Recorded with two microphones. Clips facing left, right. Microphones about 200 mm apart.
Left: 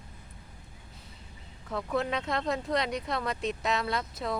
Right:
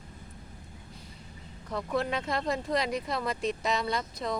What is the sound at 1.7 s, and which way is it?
Speech, centre (ahead or behind).